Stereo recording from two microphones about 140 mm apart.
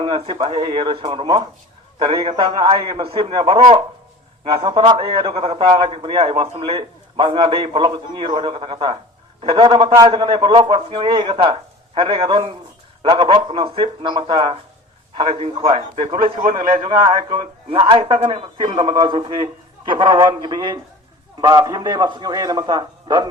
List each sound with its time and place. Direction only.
0.0 s a man's voice: 40° right (ahead or behind)
16.2 s a man's voice: 75° right (ahead or behind)
16.6 s a man's voice: 40° right (ahead or behind)